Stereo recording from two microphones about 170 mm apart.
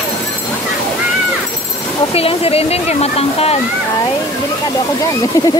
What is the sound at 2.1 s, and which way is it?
Speech, 35° left (ahead or behind).